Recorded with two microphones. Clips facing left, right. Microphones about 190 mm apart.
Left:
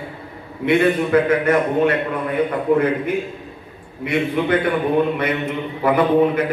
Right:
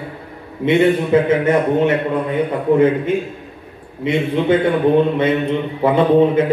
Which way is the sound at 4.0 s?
25° right (ahead or behind).